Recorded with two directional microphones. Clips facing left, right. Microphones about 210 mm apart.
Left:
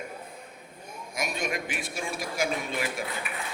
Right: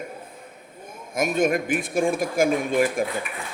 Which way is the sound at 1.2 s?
50° right (ahead or behind).